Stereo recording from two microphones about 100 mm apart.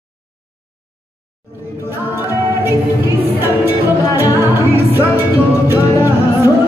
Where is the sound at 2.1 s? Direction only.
20° right (ahead or behind).